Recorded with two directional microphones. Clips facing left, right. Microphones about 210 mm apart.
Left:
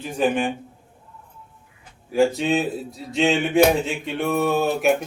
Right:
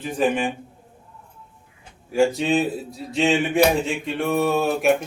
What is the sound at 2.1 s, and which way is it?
Speech, centre (ahead or behind).